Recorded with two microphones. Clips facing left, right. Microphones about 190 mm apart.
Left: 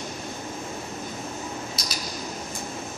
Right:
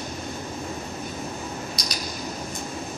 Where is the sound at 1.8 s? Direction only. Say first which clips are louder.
Right 2 dB; centre (ahead or behind).